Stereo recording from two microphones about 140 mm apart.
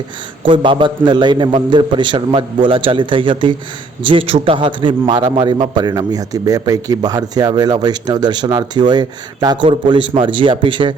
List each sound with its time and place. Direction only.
0.4 s a man's voice: 35° right (ahead or behind)